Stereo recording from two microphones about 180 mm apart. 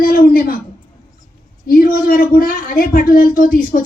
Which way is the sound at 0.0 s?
55° left (ahead or behind).